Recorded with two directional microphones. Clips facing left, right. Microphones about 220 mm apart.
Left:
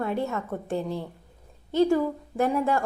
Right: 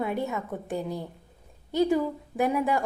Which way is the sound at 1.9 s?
10° right (ahead or behind).